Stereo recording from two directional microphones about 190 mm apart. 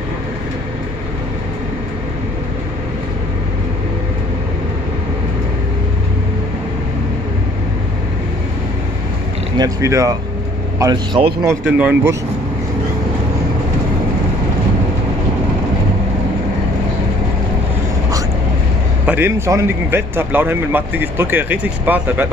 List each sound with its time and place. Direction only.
9.6 s speech: 15° right (ahead or behind)
11.6 s speech: 5° right (ahead or behind)
19.0 s speech: 10° right (ahead or behind)